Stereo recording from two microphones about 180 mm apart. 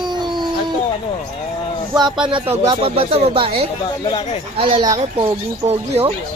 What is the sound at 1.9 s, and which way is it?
Speech, 25° right (ahead or behind).